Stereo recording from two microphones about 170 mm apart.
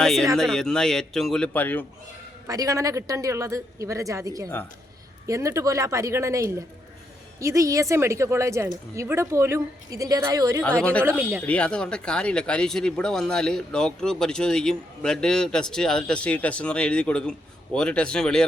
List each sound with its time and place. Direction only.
0.0 s speech: centre (ahead or behind)
2.5 s a woman's voice: 20° right (ahead or behind)
10.6 s speech: 5° left (ahead or behind)
11.2 s a woman's voice: 10° right (ahead or behind)
11.4 s speech: 5° left (ahead or behind)